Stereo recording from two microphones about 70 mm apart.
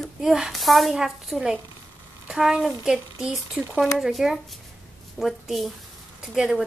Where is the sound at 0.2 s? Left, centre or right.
Centre.